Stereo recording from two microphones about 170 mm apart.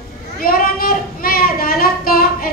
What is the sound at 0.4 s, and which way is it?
Child singing, 60° left (ahead or behind).